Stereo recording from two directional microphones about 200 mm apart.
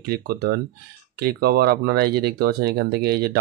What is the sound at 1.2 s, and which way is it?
Speech, 50° right (ahead or behind).